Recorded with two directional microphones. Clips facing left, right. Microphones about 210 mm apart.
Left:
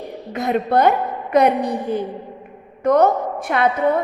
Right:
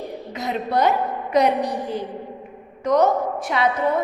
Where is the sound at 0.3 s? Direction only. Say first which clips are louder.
Left 5 dB; 55° left (ahead or behind).